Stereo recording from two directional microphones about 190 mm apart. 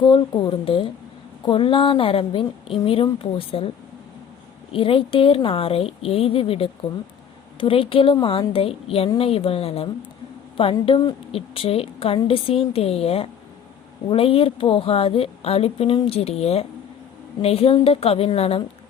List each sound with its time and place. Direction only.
0.0 s a woman's voice: 25° left (ahead or behind)
4.7 s a woman's voice: 30° left (ahead or behind)